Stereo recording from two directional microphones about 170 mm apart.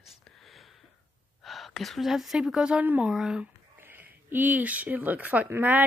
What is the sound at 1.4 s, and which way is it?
A woman's voice, centre (ahead or behind).